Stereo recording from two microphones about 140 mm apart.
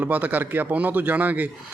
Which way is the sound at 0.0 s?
10° right (ahead or behind).